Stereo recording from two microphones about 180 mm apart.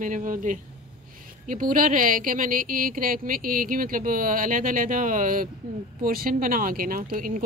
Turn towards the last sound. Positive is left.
turn(degrees=-50)  # may be behind; listen again after turning